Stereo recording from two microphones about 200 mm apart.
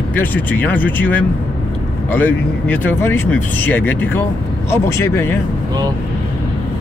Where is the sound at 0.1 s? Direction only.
10° left (ahead or behind).